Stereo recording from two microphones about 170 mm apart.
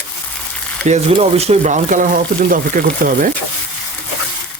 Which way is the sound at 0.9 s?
40° right (ahead or behind).